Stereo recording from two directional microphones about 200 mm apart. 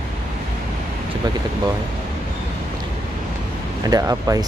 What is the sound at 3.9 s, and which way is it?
Speech, 15° right (ahead or behind).